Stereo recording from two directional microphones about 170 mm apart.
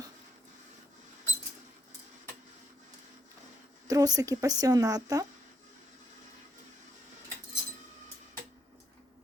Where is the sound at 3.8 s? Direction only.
20° right (ahead or behind).